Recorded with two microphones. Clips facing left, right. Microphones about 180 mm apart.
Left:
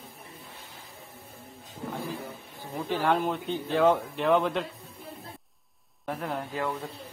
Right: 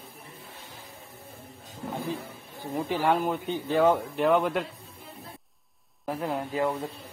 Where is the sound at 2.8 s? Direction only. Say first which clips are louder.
Even; 10° right (ahead or behind).